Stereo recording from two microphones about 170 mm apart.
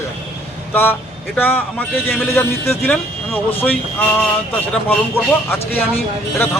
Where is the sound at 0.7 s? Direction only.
10° left (ahead or behind).